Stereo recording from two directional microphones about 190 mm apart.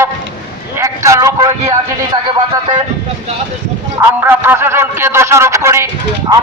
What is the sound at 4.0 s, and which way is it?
A man's voice, 10° right (ahead or behind).